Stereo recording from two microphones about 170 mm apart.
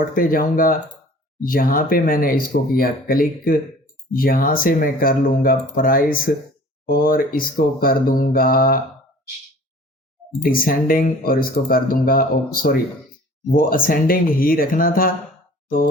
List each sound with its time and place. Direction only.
0.1 s speech: 60° left (ahead or behind)
10.4 s speech: 60° left (ahead or behind)